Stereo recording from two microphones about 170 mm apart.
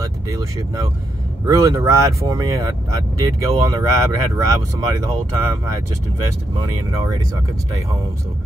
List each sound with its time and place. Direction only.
1.4 s speech: 20° right (ahead or behind)